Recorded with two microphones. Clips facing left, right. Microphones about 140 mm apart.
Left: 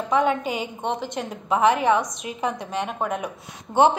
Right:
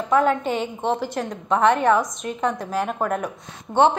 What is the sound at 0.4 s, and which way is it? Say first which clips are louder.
A woman's voice: right 3 dB; 5° left (ahead or behind).